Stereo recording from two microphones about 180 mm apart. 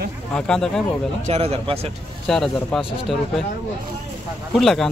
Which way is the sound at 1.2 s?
35° right (ahead or behind).